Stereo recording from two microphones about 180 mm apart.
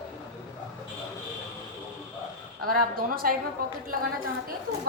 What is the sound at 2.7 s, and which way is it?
A woman's voice, 55° right (ahead or behind).